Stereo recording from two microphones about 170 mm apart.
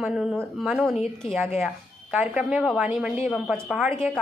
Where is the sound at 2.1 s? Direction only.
5° right (ahead or behind).